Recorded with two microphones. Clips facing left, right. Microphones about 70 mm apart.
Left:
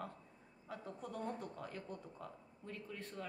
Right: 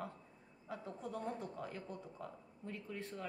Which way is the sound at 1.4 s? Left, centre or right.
Centre.